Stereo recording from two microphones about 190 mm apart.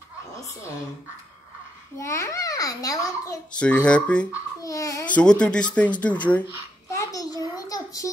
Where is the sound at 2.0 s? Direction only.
15° left (ahead or behind).